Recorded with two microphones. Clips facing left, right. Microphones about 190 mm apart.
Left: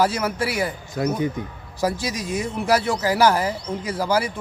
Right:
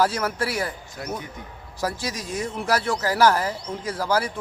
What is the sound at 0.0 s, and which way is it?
Speech, 10° left (ahead or behind).